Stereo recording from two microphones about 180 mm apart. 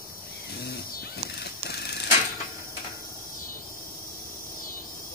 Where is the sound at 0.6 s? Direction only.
60° left (ahead or behind).